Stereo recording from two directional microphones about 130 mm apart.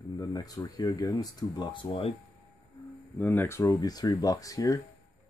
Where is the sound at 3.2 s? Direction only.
20° left (ahead or behind).